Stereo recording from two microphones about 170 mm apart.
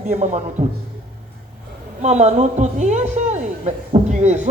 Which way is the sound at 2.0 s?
40° right (ahead or behind).